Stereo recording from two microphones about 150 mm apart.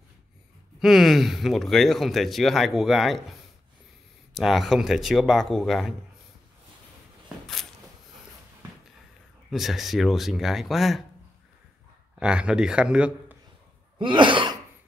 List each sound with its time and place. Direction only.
0.7 s speech: centre (ahead or behind)
9.5 s speech: centre (ahead or behind)
12.2 s speech: 5° right (ahead or behind)
13.9 s throat clearing: 35° right (ahead or behind)